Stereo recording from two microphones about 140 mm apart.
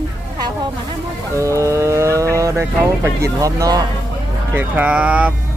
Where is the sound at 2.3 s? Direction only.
20° right (ahead or behind).